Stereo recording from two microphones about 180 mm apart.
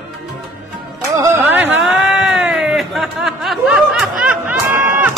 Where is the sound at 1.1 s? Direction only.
15° right (ahead or behind).